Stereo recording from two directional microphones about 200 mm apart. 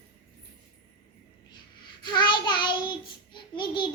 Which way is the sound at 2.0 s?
25° left (ahead or behind).